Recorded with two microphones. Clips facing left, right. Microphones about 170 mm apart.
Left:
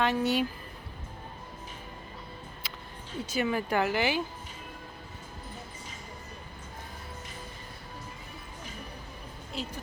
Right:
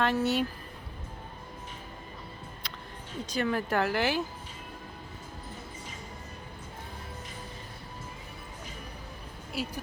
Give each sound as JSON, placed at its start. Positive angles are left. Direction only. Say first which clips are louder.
{"t": 0.0, "sound": "speech", "louder": "even", "side_deg": 0}
{"t": 2.6, "sound": "a sound", "louder": "right 1 dB", "side_deg": 5}
{"t": 3.2, "sound": "speech", "louder": "even", "side_deg": 5}
{"t": 9.5, "sound": "speech", "louder": "right 3 dB", "side_deg": -10}